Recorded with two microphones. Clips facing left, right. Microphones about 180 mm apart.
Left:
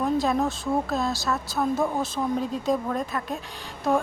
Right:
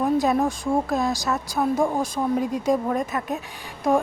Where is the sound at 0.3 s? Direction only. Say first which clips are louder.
Right 3 dB; 15° right (ahead or behind).